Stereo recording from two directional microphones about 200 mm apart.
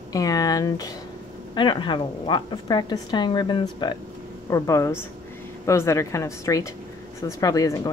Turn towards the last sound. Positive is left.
turn(degrees=20)  # may be behind; listen again after turning